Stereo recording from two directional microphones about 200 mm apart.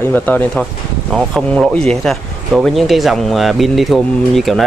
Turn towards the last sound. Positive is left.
turn(degrees=0)  # may be behind; listen again after turning